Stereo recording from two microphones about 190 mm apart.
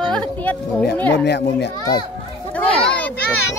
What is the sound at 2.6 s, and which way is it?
Children playing, 5° left (ahead or behind).